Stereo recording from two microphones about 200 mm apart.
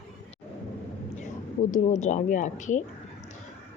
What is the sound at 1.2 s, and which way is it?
A woman's voice, 40° left (ahead or behind).